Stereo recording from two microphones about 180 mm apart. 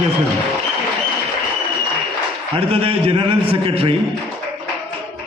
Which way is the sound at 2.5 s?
30° right (ahead or behind).